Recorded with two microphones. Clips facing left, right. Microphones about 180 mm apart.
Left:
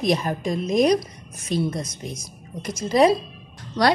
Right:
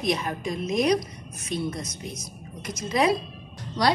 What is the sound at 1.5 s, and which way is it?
Speech, 90° left.